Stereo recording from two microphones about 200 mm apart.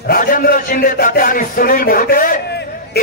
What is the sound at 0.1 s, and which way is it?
A man's voice, 45° left (ahead or behind).